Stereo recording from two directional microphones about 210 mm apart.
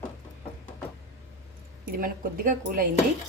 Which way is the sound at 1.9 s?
45° right (ahead or behind).